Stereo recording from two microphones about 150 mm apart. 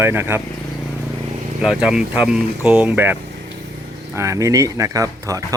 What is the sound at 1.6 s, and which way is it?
Speech, 5° right (ahead or behind).